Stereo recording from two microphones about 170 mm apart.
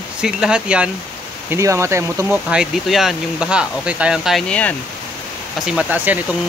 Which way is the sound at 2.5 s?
Centre (ahead or behind).